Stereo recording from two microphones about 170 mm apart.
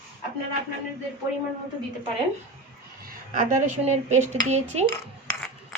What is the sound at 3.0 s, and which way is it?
Speech, 50° right (ahead or behind).